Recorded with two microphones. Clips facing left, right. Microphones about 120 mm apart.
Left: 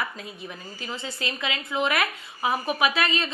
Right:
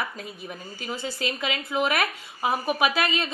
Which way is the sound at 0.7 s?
5° right (ahead or behind).